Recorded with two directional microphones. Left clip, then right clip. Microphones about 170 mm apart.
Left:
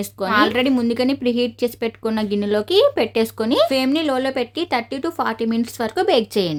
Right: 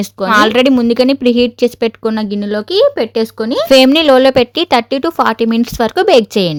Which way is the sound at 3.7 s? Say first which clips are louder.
Right 13 dB; 55° right (ahead or behind).